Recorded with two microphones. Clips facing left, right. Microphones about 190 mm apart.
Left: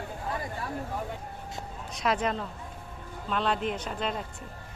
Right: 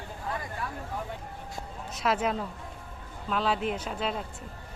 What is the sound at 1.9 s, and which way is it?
Speech, 5° right (ahead or behind).